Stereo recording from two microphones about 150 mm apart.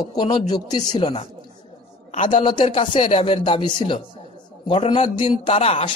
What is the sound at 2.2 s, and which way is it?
A man's voice, 35° left (ahead or behind).